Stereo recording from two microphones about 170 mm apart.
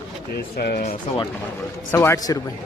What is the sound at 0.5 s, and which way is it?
Speech, 70° left (ahead or behind).